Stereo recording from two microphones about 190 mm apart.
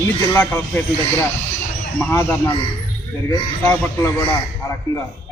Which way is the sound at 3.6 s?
15° left (ahead or behind).